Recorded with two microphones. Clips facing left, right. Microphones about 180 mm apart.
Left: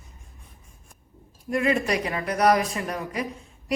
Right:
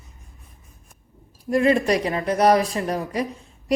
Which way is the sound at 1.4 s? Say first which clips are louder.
Right 5 dB; 35° right (ahead or behind).